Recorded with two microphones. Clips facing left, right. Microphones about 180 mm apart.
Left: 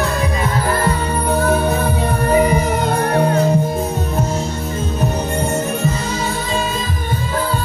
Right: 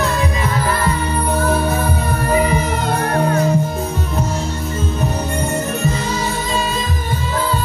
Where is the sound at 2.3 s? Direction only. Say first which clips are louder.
Left 2 dB; 40° left (ahead or behind).